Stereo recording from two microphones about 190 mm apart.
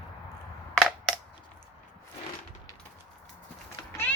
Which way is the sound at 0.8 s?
Centre (ahead or behind).